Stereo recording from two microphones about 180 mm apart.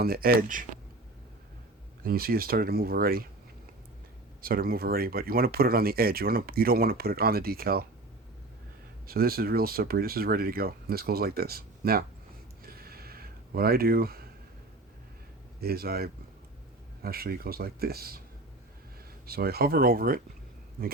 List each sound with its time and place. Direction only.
0.0 s speech: 55° right (ahead or behind)
2.0 s speech: 55° right (ahead or behind)
4.4 s speech: 55° right (ahead or behind)
9.0 s speech: 55° right (ahead or behind)
12.6 s a sound: 55° right (ahead or behind)
15.6 s speech: 60° right (ahead or behind)
19.2 s speech: 60° right (ahead or behind)